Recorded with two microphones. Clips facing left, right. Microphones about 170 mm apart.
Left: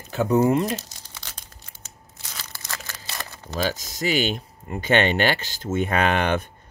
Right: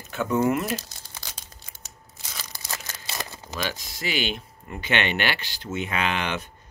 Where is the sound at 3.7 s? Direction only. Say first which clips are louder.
Left 8 dB; 45° left (ahead or behind).